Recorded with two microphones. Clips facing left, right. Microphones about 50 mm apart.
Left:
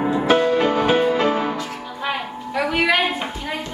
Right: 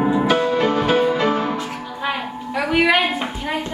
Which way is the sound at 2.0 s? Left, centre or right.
Centre.